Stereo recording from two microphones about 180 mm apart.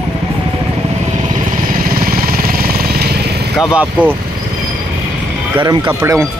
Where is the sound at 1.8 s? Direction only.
55° right (ahead or behind).